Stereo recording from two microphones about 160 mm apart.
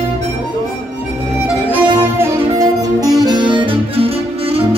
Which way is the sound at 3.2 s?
30° right (ahead or behind).